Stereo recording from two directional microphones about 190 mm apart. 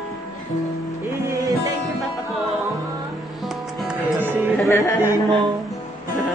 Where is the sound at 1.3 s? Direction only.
15° right (ahead or behind).